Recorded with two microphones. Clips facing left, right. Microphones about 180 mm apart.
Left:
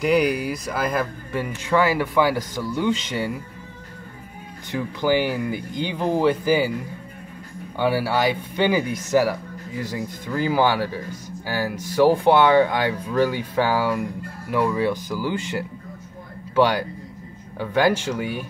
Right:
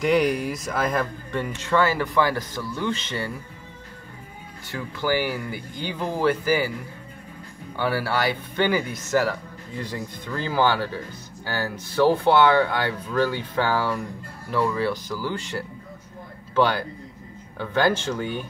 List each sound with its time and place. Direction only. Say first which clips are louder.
0.0 s speech: left 1 dB; 5° left (ahead or behind)
4.6 s speech: left 4 dB; 20° left (ahead or behind)
7.7 s a man's voice: left 3 dB; 15° left (ahead or behind)